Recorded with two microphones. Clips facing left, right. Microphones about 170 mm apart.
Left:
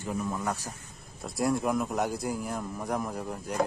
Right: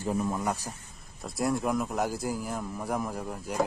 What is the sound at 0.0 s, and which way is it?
Speech, 25° right (ahead or behind).